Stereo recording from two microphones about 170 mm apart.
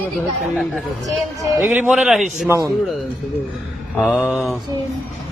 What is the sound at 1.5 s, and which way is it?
Speech, 10° right (ahead or behind).